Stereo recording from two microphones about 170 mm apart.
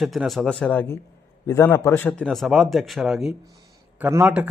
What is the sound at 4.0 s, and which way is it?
Speech, 15° right (ahead or behind).